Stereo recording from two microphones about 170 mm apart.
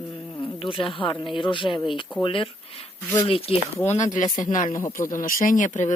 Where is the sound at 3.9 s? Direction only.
45° left (ahead or behind).